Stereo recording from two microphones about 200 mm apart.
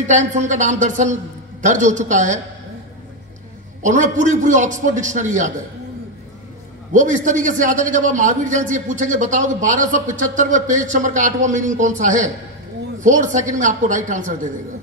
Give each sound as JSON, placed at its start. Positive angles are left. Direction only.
{"t": 0.0, "sound": "a man's voice", "side_deg": -35}
{"t": 3.8, "sound": "a man's voice", "side_deg": -40}
{"t": 6.9, "sound": "a man's voice", "side_deg": -40}